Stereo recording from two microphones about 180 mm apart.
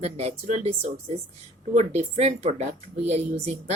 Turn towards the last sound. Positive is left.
turn(degrees=-40)  # may be behind; listen again after turning